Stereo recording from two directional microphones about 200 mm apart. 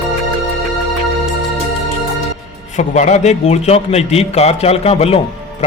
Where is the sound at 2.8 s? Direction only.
35° left (ahead or behind).